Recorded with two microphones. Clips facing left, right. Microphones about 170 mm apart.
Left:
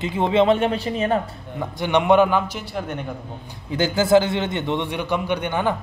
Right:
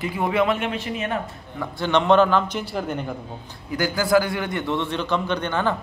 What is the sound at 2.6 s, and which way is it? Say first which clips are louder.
Speech: right 2 dB; centre (ahead or behind).